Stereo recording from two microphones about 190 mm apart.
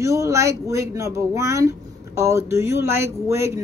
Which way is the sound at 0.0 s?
15° right (ahead or behind).